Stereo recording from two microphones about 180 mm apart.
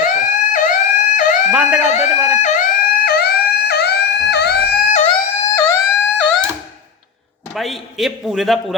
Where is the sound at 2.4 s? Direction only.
40° left (ahead or behind).